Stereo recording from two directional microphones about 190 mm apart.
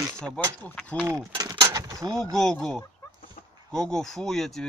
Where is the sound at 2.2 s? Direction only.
5° left (ahead or behind).